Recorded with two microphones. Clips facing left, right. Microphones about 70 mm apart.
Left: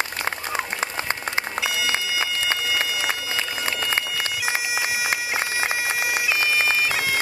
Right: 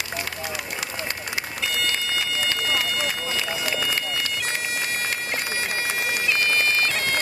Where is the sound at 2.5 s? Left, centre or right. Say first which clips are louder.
Even; centre.